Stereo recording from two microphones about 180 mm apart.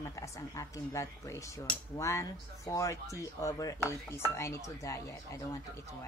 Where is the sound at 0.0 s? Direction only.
15° left (ahead or behind).